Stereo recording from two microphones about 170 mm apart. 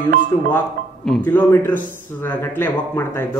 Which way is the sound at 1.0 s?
5° left (ahead or behind).